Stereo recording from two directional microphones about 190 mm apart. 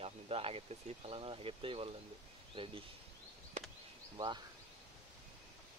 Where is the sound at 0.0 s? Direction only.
30° right (ahead or behind).